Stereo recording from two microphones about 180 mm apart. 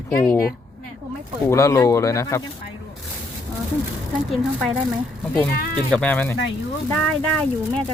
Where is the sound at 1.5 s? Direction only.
15° left (ahead or behind).